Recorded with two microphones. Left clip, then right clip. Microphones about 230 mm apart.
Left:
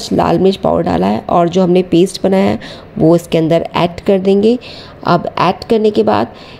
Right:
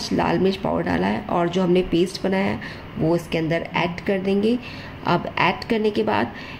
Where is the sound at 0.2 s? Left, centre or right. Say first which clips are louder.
Left 10 dB; left.